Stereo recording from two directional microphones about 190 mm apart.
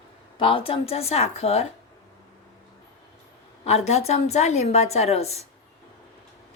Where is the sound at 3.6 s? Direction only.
35° left (ahead or behind).